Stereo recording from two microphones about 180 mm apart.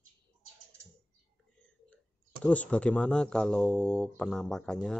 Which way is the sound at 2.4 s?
5° left (ahead or behind).